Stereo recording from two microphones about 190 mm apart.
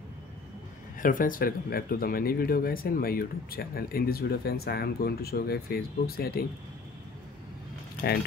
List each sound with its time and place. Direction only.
0.9 s speech: 45° left (ahead or behind)